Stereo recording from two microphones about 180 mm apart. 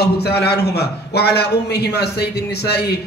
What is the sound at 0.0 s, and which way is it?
A man's voice, 65° left (ahead or behind).